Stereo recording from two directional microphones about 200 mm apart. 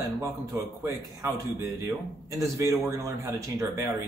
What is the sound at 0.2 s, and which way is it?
A man's voice, 15° right (ahead or behind).